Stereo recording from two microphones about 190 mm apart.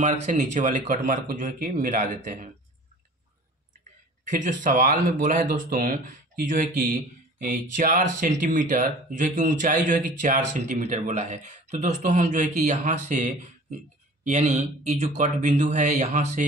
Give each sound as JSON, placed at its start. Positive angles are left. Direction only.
{"t": 0.0, "sound": "speech", "side_deg": -40}
{"t": 4.4, "sound": "speech", "side_deg": -40}